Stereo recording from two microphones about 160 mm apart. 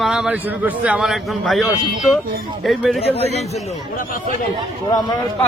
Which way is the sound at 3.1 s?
40° left (ahead or behind).